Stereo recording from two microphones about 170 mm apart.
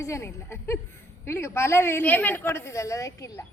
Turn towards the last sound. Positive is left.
turn(degrees=20)  # may be behind; listen again after turning